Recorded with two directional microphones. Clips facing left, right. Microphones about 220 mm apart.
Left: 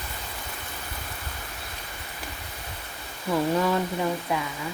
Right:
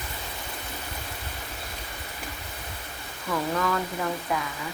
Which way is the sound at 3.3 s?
25° left (ahead or behind).